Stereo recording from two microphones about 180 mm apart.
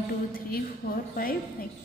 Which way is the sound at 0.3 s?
55° left (ahead or behind).